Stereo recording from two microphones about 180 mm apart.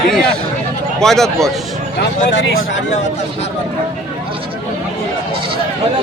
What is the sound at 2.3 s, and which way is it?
Speech, 90° left.